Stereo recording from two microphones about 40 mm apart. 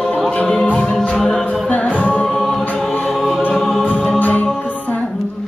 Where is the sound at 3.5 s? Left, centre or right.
Centre.